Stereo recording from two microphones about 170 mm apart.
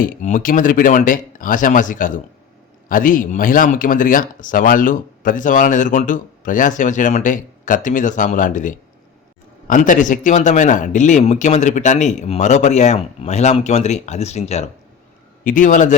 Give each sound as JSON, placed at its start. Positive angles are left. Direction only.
{"t": 0.0, "sound": "speech", "side_deg": 50}
{"t": 15.4, "sound": "speech", "side_deg": 50}